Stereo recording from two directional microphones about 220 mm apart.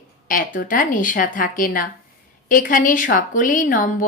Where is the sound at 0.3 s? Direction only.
40° left (ahead or behind).